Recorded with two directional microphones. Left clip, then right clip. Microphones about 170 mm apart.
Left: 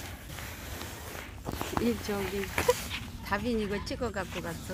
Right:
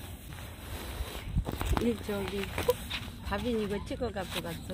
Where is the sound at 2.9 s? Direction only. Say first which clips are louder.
Even; 45° right (ahead or behind).